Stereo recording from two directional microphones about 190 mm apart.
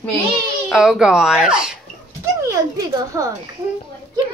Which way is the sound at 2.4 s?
15° right (ahead or behind).